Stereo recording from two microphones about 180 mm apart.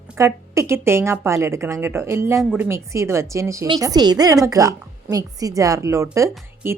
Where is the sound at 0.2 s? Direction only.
15° right (ahead or behind).